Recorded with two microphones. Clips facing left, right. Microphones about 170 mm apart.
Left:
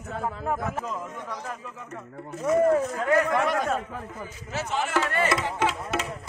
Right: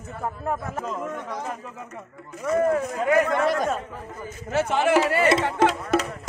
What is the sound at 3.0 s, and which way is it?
Speech, 10° right (ahead or behind).